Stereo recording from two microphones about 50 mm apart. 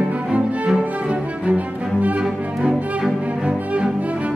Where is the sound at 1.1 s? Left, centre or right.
Right.